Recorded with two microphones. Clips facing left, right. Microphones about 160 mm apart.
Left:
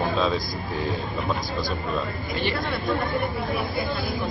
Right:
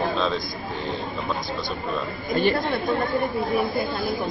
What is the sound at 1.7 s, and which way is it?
Speech, centre (ahead or behind).